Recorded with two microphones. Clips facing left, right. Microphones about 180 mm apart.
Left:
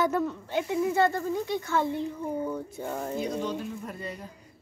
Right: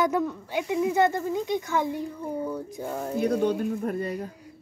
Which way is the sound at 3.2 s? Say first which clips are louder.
Right 7 dB; 60° right (ahead or behind).